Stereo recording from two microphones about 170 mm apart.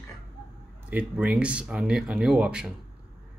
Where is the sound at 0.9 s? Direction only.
10° right (ahead or behind).